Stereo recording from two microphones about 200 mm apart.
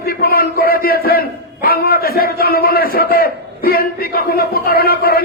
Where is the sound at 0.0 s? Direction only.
50° left (ahead or behind).